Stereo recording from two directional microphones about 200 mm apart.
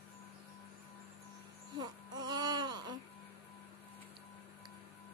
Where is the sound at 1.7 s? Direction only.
20° right (ahead or behind).